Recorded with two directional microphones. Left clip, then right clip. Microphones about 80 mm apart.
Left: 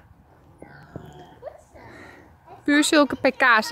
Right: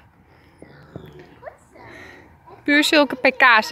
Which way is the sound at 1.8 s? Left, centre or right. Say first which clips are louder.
Right 5 dB; left.